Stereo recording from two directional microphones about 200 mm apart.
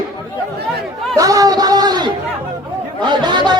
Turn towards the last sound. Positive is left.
turn(degrees=-20)  # may be behind; listen again after turning